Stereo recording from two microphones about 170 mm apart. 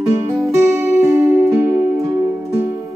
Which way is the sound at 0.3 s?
15° right (ahead or behind).